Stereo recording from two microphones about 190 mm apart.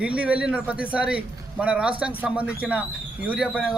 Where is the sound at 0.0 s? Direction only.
5° right (ahead or behind).